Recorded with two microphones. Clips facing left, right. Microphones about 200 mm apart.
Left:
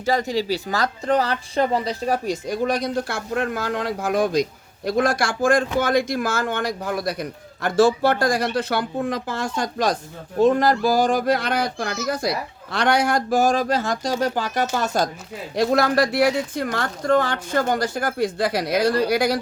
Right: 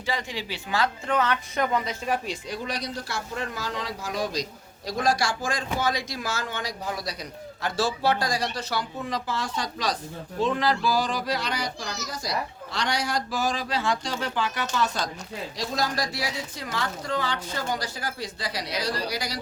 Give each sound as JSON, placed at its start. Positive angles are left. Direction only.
{"t": 0.0, "sound": "speech", "side_deg": 40}
{"t": 15.5, "sound": "speech", "side_deg": 60}